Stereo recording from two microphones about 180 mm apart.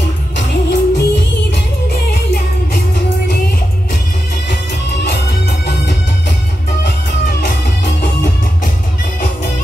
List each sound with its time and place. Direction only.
0.4 s music: 75° left (ahead or behind)